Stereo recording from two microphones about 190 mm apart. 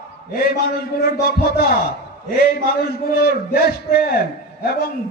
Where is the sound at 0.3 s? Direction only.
55° left (ahead or behind).